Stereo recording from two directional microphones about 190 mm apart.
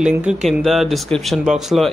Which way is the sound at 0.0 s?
5° right (ahead or behind).